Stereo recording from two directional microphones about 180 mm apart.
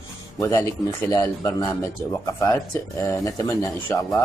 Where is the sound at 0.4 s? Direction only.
15° left (ahead or behind).